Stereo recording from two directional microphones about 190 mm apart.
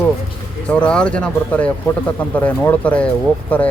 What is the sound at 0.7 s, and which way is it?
Speech, 5° left (ahead or behind).